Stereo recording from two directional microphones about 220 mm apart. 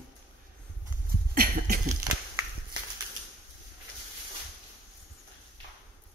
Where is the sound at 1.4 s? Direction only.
35° right (ahead or behind).